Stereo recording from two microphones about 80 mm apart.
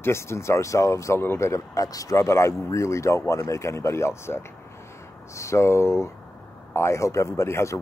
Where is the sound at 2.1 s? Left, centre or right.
Left.